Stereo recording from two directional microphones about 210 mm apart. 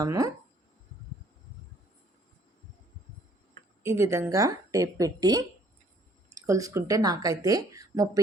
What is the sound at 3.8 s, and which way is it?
Speech, 15° right (ahead or behind).